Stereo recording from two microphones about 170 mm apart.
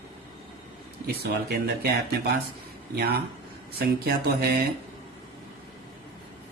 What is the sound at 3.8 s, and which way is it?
Speech, 65° right (ahead or behind).